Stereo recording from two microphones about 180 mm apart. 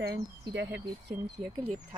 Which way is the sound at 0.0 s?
80° right.